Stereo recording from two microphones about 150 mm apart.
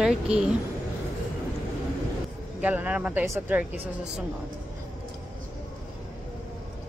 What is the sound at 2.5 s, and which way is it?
Speech, 10° right (ahead or behind).